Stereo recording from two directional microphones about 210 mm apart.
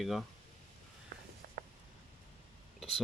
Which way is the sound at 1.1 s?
50° right (ahead or behind).